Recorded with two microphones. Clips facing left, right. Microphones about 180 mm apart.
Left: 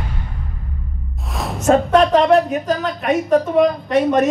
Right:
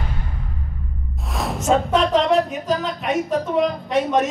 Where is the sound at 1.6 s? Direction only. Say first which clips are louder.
Left 5 dB; 55° left (ahead or behind).